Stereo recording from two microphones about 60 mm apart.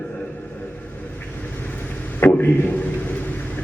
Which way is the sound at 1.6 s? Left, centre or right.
Left.